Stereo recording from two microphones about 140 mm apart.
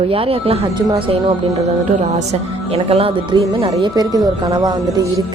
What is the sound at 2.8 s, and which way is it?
Speech, 40° right (ahead or behind).